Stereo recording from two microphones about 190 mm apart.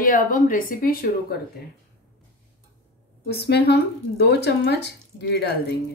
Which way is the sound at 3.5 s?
60° left (ahead or behind).